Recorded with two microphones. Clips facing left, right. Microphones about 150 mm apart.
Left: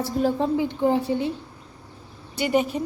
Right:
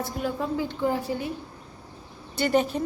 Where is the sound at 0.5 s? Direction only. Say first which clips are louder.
Left 5 dB; 20° left (ahead or behind).